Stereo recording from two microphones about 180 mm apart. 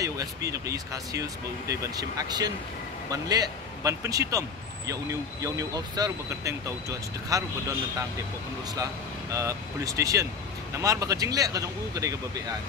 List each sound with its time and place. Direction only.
0.0 s speech: 20° right (ahead or behind)
9.3 s speech: 15° right (ahead or behind)